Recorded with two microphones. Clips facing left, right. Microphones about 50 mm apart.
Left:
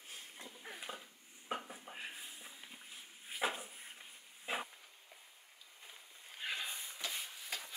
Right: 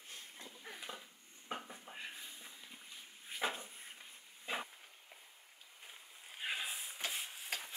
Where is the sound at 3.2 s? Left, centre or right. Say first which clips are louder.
Left 1 dB; centre.